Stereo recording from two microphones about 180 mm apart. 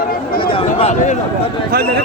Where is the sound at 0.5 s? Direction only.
35° left (ahead or behind).